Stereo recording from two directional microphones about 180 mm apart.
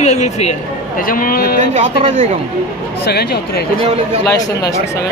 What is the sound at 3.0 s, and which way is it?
Speech, 65° left (ahead or behind).